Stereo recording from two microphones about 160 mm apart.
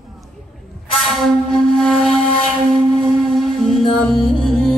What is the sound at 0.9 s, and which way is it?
Flute, centre (ahead or behind).